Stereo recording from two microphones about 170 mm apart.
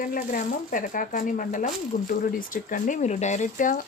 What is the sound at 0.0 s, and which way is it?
Speech, 55° left (ahead or behind).